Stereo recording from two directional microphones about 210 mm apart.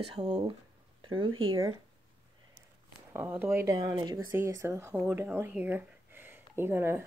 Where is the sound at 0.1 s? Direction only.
20° right (ahead or behind).